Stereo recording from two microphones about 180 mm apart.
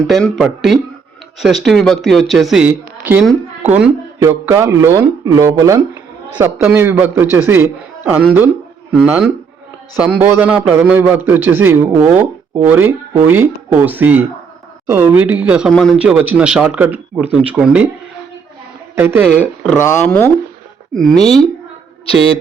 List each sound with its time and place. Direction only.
0.1 s speech: centre (ahead or behind)
4.2 s speech: 15° right (ahead or behind)
18.9 s speech: 10° right (ahead or behind)
19.3 s speech: centre (ahead or behind)
20.9 s speech: centre (ahead or behind)